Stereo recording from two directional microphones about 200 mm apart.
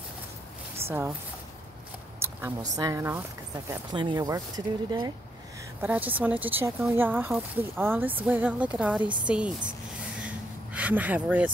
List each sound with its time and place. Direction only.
0.8 s speech: 10° right (ahead or behind)
2.1 s a sound: 15° right (ahead or behind)
2.7 s speech: 15° right (ahead or behind)
5.8 s speech: 10° right (ahead or behind)
10.2 s vehicle: 5° right (ahead or behind)